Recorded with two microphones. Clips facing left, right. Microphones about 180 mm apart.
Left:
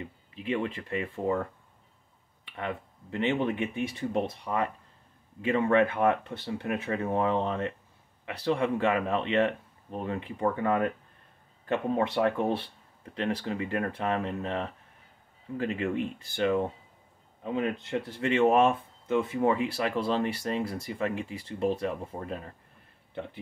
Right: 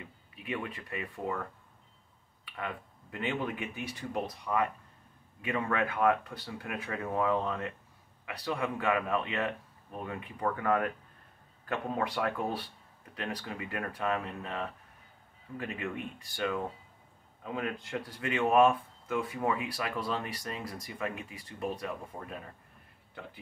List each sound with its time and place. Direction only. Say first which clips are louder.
0.0 s speech: left 8 dB; 25° left (ahead or behind)
2.4 s speech: left 4 dB; 25° left (ahead or behind)